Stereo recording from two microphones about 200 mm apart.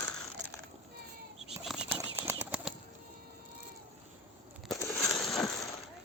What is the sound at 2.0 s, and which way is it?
Bird flight, 15° right (ahead or behind).